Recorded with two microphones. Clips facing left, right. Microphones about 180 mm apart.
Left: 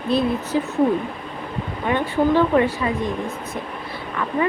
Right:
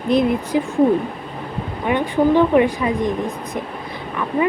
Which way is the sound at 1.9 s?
15° right (ahead or behind).